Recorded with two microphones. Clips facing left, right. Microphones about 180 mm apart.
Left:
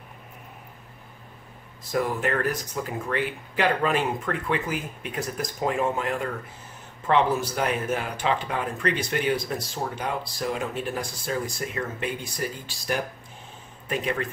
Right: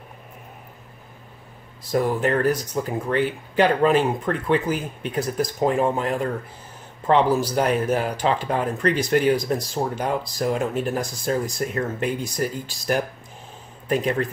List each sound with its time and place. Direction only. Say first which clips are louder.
1.9 s speech: right 4 dB; 35° right (ahead or behind)